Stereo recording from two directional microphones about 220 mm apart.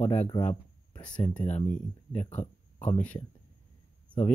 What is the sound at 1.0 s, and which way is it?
Speech, 5° left (ahead or behind).